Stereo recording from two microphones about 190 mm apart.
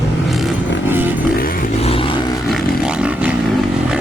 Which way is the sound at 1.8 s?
30° left (ahead or behind).